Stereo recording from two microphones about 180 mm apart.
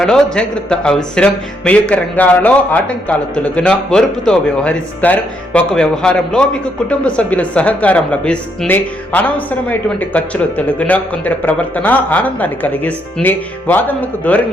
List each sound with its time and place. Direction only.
0.0 s a man's voice: 5° left (ahead or behind)